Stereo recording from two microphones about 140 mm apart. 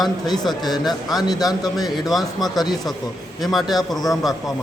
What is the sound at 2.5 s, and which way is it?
Speech, 30° left (ahead or behind).